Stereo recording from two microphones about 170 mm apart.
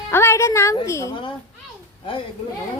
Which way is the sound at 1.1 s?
30° left (ahead or behind).